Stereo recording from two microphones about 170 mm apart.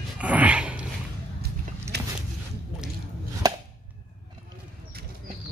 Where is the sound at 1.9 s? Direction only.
75° right (ahead or behind).